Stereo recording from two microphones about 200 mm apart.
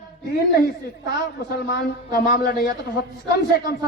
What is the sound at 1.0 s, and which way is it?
A man's voice, 55° left (ahead or behind).